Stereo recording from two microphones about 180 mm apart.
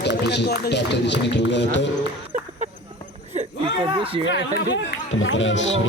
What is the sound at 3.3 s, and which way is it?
Speech, 30° right (ahead or behind).